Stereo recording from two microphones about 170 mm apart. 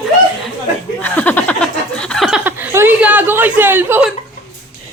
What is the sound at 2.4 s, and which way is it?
Chuckle, 10° right (ahead or behind).